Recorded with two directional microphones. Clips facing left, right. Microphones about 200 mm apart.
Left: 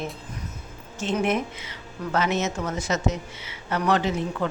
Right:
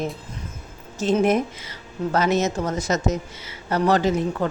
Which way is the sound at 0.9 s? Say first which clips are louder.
Right 5 dB; 40° right (ahead or behind).